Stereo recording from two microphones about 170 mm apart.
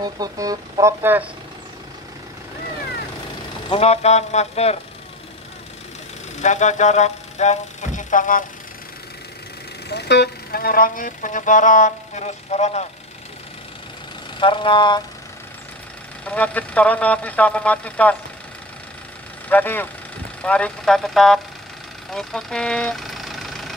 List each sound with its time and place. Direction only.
0.0 s speech: 20° right (ahead or behind)
3.6 s speech: 35° left (ahead or behind)
6.4 s speech: 45° left (ahead or behind)
9.8 s speech: 80° left; by 12.8 s 40° left (ahead or behind)
14.4 s speech: 30° left (ahead or behind)
16.3 s speech: 10° left (ahead or behind)
19.5 s speech: 10° left (ahead or behind)
22.1 s vehicle: 5° left (ahead or behind)